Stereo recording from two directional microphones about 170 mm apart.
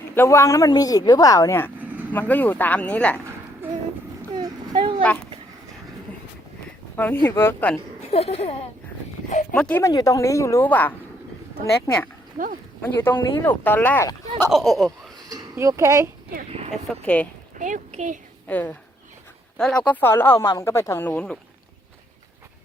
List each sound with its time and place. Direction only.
0.1 s a woman's voice: 15° left (ahead or behind)
4.4 s a sound: 25° right (ahead or behind)
6.9 s a woman's voice: 10° left (ahead or behind)
8.1 s speech: 35° left (ahead or behind)
9.3 s speech: 45° left (ahead or behind)
9.6 s a woman's voice: 5° left (ahead or behind)
9.8 s a woman's voice: 20° left (ahead or behind)
12.4 s speech: 50° right (ahead or behind)
12.8 s a woman's voice: 10° left (ahead or behind)
14.5 s speech: centre (ahead or behind)
15.3 s speech: 15° right (ahead or behind)
16.9 s a woman's voice: 5° left (ahead or behind)
17.6 s speech: 50° right (ahead or behind)
18.4 s a woman's voice: 10° left (ahead or behind)